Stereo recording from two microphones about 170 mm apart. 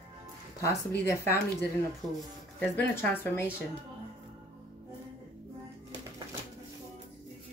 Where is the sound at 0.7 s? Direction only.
15° left (ahead or behind).